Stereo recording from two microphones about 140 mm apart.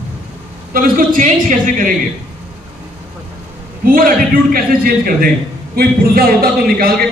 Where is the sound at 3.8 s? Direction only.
90° right.